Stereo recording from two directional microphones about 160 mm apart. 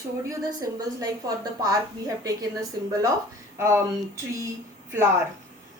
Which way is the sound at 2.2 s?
20° right (ahead or behind).